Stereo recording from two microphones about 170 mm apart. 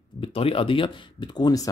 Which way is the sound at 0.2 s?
35° left (ahead or behind).